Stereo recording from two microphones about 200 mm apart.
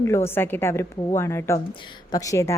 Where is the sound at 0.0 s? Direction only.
15° left (ahead or behind).